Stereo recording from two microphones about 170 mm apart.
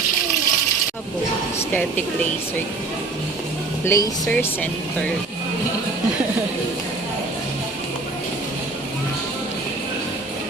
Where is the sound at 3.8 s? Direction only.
20° left (ahead or behind).